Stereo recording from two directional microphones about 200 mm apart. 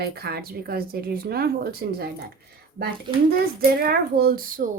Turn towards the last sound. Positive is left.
turn(degrees=-45)  # may be behind; listen again after turning